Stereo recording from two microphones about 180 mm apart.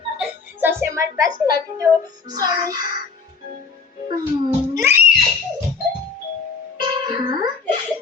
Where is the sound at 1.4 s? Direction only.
20° right (ahead or behind).